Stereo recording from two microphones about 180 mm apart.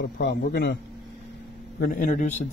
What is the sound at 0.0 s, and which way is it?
Speech, 70° left (ahead or behind).